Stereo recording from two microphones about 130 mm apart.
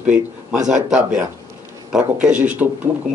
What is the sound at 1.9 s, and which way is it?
Speech, 10° right (ahead or behind).